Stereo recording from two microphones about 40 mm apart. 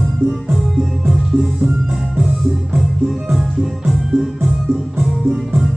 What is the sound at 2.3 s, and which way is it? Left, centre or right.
Music, centre.